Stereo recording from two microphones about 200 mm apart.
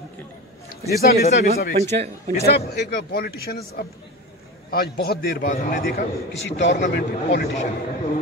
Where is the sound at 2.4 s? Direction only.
55° left (ahead or behind).